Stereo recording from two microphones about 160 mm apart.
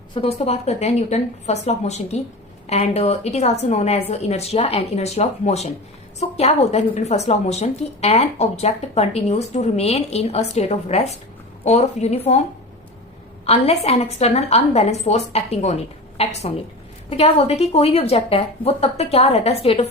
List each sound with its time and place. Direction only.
0.1 s a woman's voice: 30° left (ahead or behind)
13.4 s a woman's voice: 40° left (ahead or behind)